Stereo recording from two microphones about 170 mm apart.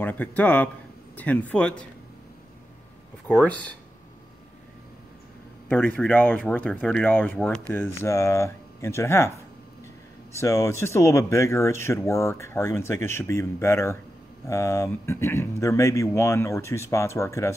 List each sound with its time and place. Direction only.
0.0 s speech: 10° left (ahead or behind)
3.3 s speech: 10° left (ahead or behind)
5.7 s speech: 10° left (ahead or behind)
10.4 s speech: 15° left (ahead or behind)